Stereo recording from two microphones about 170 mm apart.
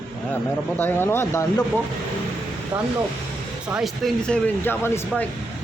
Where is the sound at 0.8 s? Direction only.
10° left (ahead or behind).